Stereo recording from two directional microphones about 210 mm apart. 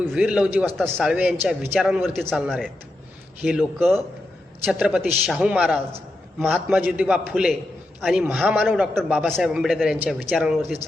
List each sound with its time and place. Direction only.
0.0 s a man's voice: 5° right (ahead or behind)